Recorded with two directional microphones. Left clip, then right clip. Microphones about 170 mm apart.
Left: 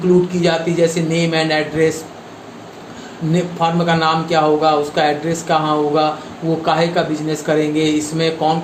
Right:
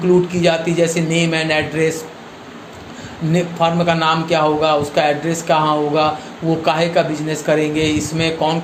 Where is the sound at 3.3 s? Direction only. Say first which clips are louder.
Right 1 dB; 25° right (ahead or behind).